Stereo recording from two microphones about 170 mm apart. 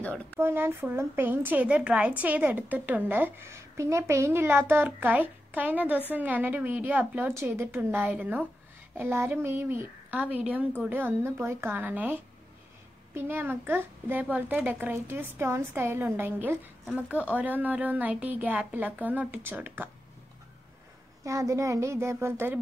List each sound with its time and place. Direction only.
0.0 s speech: 10° left (ahead or behind)
0.4 s a woman's voice: 15° right (ahead or behind)
21.2 s a woman's voice: 20° right (ahead or behind)